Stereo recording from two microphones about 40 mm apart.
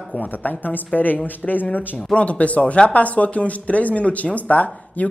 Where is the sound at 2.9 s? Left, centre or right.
Left.